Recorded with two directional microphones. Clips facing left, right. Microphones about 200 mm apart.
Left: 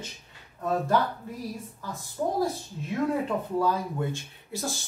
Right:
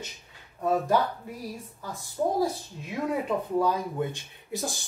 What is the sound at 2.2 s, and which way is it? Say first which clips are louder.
Speech: right 2 dB; 15° right (ahead or behind).